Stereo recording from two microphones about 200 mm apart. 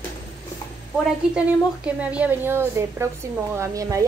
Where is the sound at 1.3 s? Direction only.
5° right (ahead or behind).